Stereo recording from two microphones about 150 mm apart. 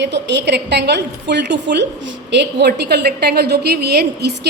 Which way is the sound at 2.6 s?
90° right.